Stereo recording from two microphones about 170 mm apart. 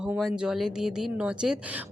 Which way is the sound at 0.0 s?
5° right (ahead or behind).